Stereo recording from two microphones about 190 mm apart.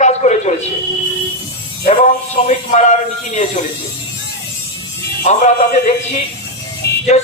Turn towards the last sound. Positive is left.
turn(degrees=55)  # may be behind; listen again after turning